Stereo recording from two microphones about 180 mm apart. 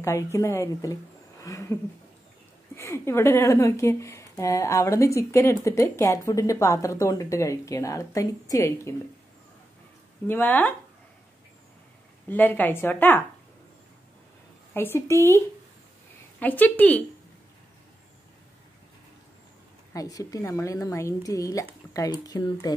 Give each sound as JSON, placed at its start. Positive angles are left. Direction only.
{"t": 0.0, "sound": "speech", "side_deg": 15}
{"t": 1.4, "sound": "a sound", "side_deg": 20}
{"t": 2.7, "sound": "speech", "side_deg": 15}
{"t": 10.2, "sound": "speech", "side_deg": 10}
{"t": 12.3, "sound": "speech", "side_deg": 10}
{"t": 14.7, "sound": "speech", "side_deg": 10}
{"t": 19.9, "sound": "a woman's voice", "side_deg": 20}